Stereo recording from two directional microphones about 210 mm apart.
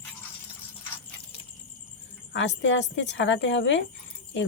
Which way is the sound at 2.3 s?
60° left (ahead or behind).